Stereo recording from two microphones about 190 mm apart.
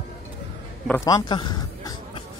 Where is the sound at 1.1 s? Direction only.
20° left (ahead or behind).